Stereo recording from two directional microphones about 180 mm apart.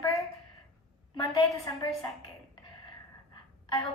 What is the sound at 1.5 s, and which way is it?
Speech, 20° left (ahead or behind).